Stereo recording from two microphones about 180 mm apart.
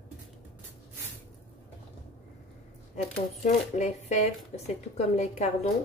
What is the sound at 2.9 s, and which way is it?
Speech, 40° left (ahead or behind).